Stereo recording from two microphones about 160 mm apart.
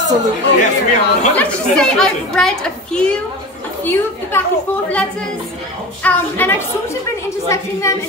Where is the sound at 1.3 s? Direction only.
5° left (ahead or behind).